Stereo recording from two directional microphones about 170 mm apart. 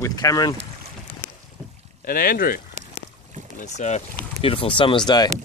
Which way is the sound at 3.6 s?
45° left (ahead or behind).